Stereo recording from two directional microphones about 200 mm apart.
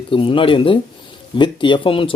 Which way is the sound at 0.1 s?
25° left (ahead or behind).